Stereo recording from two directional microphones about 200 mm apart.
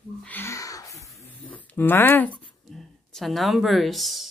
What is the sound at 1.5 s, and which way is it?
Speech, 10° left (ahead or behind).